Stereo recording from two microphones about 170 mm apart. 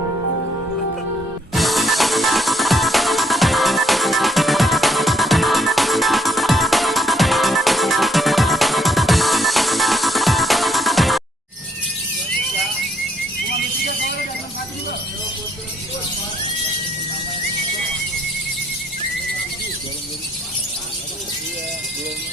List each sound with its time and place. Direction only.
1.5 s music: centre (ahead or behind)